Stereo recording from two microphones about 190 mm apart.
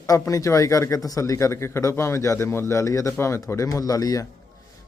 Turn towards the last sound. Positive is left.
turn(degrees=20)  # may be behind; listen again after turning